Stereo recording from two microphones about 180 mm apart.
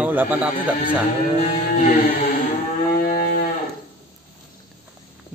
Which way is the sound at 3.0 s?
45° left (ahead or behind).